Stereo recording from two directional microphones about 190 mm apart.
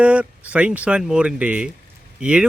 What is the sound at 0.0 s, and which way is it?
Speech, 5° right (ahead or behind).